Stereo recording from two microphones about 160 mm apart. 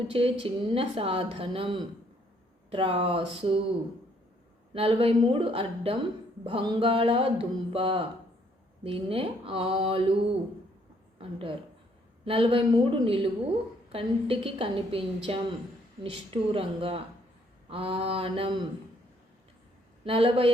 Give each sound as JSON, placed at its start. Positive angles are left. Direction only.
{"t": 0.1, "sound": "a woman's voice", "side_deg": -35}
{"t": 4.7, "sound": "a woman's voice", "side_deg": -35}
{"t": 11.2, "sound": "a woman's voice", "side_deg": -35}
{"t": 20.1, "sound": "a woman's voice", "side_deg": -35}